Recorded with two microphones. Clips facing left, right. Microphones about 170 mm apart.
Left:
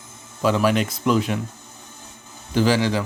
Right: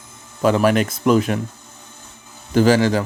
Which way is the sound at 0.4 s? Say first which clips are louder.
Right 3 dB; 55° right (ahead or behind).